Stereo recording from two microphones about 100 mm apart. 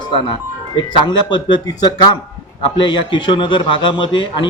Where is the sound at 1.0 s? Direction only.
50° left (ahead or behind).